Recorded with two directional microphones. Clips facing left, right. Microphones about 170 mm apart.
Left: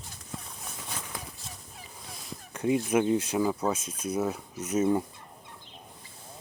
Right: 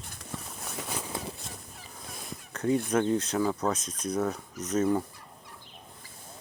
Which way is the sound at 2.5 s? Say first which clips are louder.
Even; 10° left (ahead or behind).